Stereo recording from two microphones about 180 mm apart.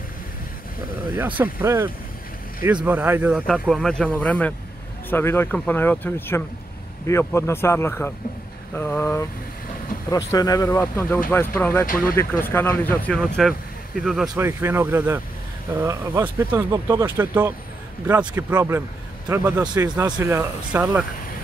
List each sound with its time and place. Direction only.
1.1 s speech: 10° right (ahead or behind)
14.3 s speech: 15° right (ahead or behind)